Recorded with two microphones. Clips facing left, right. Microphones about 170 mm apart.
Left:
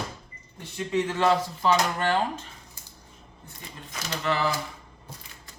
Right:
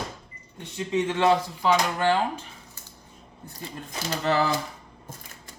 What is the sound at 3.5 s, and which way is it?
Speech, 35° right (ahead or behind).